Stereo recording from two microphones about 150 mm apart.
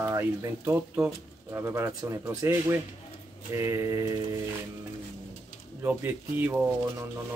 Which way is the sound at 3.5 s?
20° right (ahead or behind).